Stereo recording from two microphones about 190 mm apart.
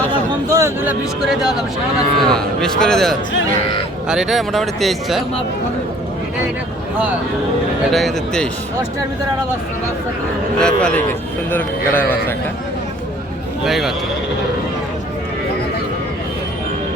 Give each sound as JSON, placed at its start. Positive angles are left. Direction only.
{"t": 0.5, "sound": "speech", "side_deg": -15}
{"t": 2.1, "sound": "a man's voice", "side_deg": 5}
{"t": 7.9, "sound": "a man's voice", "side_deg": 0}
{"t": 10.6, "sound": "a man's voice", "side_deg": 5}
{"t": 12.0, "sound": "a man's voice", "side_deg": 50}
{"t": 13.7, "sound": "a man's voice", "side_deg": 0}